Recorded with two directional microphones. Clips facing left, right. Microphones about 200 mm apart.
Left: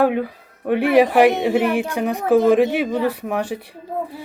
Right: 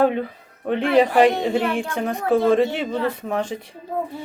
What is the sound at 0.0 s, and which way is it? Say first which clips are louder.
Speech: left 1 dB; 10° left (ahead or behind).